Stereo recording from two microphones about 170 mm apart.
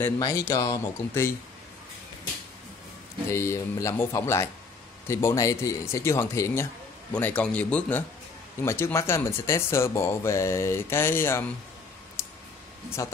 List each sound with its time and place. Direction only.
0.2 s speech: 20° left (ahead or behind)
3.3 s speech: 15° left (ahead or behind)
12.2 s clicking: 15° left (ahead or behind)
13.0 s speech: 20° left (ahead or behind)